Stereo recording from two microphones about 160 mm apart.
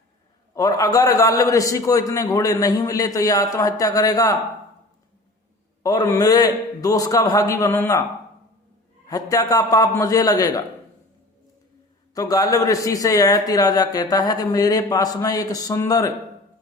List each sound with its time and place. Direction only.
0.5 s a man's voice: 20° left (ahead or behind)
5.8 s a man's voice: 25° left (ahead or behind)
9.0 s a man's voice: 20° left (ahead or behind)
12.1 s a man's voice: 20° left (ahead or behind)